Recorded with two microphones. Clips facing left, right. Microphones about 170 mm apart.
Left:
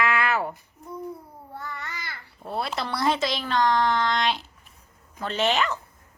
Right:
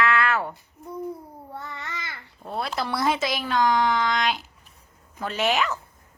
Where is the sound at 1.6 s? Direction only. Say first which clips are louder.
Even; 25° right (ahead or behind).